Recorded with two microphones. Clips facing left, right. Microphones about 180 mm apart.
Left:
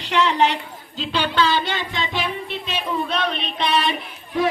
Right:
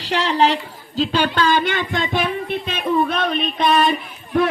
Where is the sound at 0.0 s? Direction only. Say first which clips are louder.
Right 1 dB; 35° right (ahead or behind).